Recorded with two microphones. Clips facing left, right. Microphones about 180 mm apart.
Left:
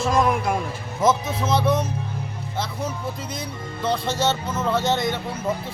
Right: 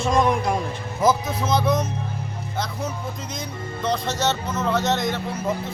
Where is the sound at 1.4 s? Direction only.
5° left (ahead or behind).